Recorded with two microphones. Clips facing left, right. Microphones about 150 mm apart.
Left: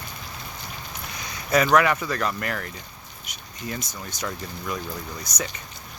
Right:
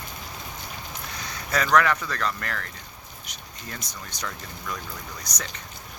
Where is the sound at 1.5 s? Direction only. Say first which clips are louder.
Left 3 dB; 15° left (ahead or behind).